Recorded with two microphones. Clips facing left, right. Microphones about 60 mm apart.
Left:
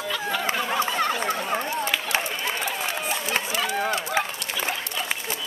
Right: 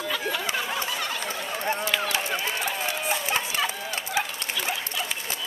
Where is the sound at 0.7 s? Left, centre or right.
Left.